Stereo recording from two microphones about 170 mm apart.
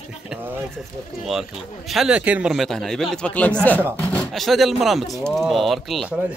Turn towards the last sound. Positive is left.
turn(degrees=-5)  # may be behind; listen again after turning